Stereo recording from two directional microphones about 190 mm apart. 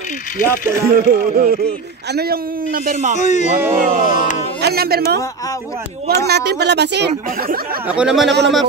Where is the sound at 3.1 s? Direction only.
40° left (ahead or behind).